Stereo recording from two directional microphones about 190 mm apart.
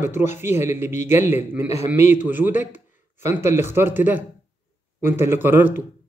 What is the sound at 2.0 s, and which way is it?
Speech, 40° left (ahead or behind).